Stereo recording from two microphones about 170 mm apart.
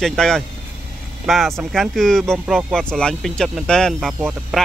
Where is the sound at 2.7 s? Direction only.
5° left (ahead or behind).